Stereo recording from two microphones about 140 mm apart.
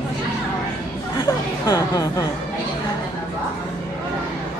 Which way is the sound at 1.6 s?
30° left (ahead or behind).